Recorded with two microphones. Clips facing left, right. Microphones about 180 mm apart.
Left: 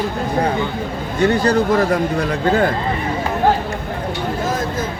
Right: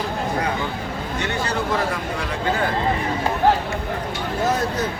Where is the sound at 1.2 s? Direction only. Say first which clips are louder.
Left 11 dB; 40° left (ahead or behind).